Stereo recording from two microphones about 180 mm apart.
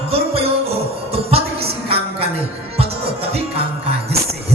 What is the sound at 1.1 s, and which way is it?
Music, 35° right (ahead or behind).